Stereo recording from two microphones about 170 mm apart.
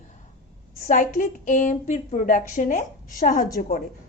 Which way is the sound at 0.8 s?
50° left (ahead or behind).